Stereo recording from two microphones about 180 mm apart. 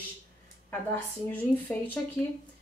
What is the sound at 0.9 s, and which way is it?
Speech, 10° left (ahead or behind).